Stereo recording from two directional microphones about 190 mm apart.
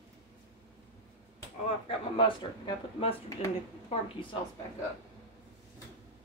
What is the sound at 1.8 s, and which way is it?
Speech, 25° left (ahead or behind).